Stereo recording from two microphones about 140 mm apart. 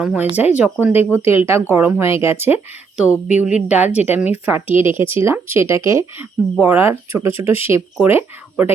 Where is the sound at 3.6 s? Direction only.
10° right (ahead or behind).